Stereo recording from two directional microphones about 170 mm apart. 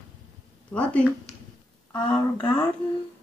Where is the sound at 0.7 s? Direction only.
10° left (ahead or behind).